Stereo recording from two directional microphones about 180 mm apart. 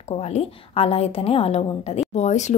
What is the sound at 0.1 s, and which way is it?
A woman's voice, 35° left (ahead or behind).